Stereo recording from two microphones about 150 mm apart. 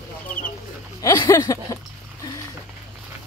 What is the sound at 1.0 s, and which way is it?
Speech, 20° left (ahead or behind).